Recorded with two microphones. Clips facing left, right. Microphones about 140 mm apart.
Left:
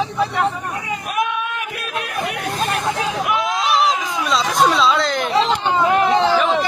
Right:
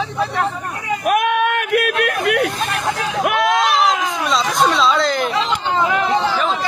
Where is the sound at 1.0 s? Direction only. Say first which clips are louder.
Right 8 dB; 70° right (ahead or behind).